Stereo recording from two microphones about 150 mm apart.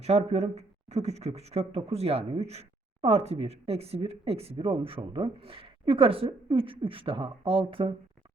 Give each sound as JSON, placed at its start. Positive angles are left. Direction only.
{"t": 0.0, "sound": "speech", "side_deg": -45}